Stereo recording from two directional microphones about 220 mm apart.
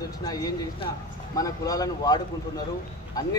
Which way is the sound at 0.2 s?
15° left (ahead or behind).